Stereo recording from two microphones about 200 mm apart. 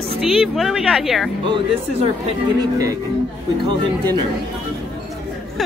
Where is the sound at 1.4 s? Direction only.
25° right (ahead or behind).